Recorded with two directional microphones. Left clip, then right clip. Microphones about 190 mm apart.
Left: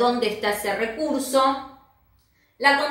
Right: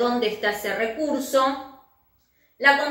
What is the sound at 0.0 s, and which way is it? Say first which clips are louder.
A woman's voice: left 1 dB; 20° left (ahead or behind).